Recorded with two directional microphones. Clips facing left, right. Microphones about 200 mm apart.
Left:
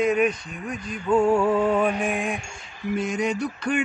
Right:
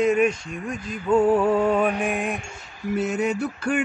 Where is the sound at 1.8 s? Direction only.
Centre (ahead or behind).